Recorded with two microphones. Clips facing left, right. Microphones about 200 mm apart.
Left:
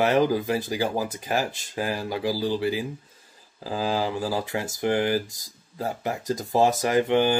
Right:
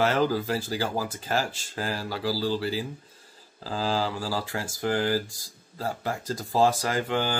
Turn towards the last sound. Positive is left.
turn(degrees=20)  # may be behind; listen again after turning